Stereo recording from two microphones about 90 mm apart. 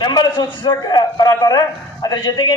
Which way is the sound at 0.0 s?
50° left (ahead or behind).